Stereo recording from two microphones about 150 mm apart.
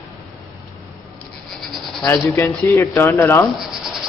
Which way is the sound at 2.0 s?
20° left (ahead or behind).